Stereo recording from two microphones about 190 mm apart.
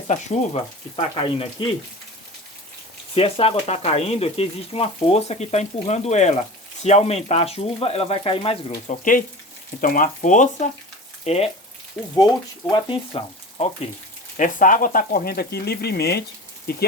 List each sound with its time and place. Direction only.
0.1 s speech: 35° left (ahead or behind)
3.2 s speech: 30° left (ahead or behind)
8.9 s speech: 45° left (ahead or behind)
12.0 s speech: 5° left (ahead or behind)
12.7 s speech: 30° left (ahead or behind)
14.3 s speech: 45° left (ahead or behind); by 16.2 s 60° left (ahead or behind)